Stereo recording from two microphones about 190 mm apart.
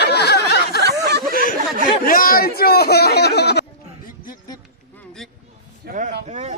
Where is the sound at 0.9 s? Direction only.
60° right (ahead or behind).